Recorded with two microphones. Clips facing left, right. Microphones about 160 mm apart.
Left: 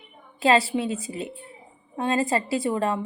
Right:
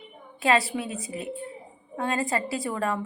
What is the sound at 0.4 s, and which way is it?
A woman's voice, 30° left (ahead or behind).